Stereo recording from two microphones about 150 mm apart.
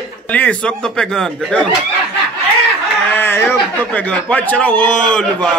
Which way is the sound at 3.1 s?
15° left (ahead or behind).